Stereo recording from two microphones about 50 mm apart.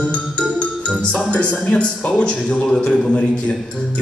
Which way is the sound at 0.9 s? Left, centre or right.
Left.